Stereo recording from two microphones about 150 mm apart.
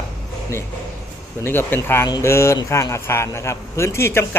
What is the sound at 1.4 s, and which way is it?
A man's voice, 15° left (ahead or behind).